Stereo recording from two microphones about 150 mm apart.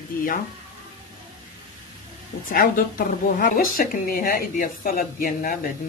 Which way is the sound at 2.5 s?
75° left (ahead or behind).